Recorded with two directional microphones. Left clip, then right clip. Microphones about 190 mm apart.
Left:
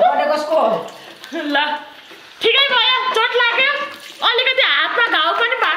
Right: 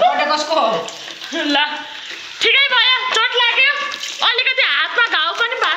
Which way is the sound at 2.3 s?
5° right (ahead or behind).